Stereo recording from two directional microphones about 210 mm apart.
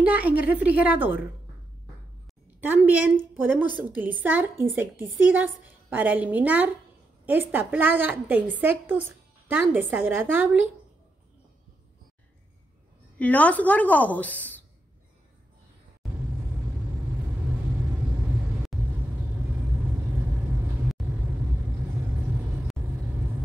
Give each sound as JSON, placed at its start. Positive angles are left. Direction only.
{"t": 0.0, "sound": "a woman's voice", "side_deg": -5}
{"t": 2.6, "sound": "a woman's voice", "side_deg": -10}
{"t": 13.2, "sound": "a woman's voice", "side_deg": 5}